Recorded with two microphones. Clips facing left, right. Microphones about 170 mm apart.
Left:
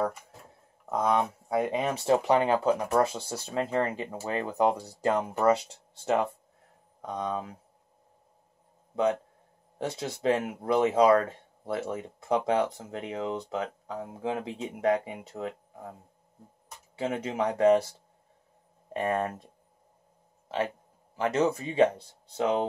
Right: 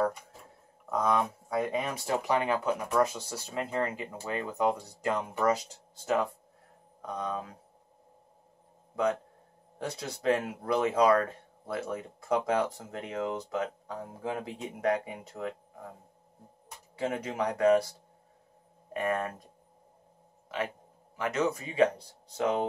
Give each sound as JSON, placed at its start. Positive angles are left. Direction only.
{"t": 0.8, "sound": "speech", "side_deg": 25}
{"t": 7.1, "sound": "speech", "side_deg": 25}
{"t": 9.8, "sound": "speech", "side_deg": 25}
{"t": 17.1, "sound": "speech", "side_deg": 25}
{"t": 18.9, "sound": "speech", "side_deg": 30}
{"t": 20.5, "sound": "speech", "side_deg": 30}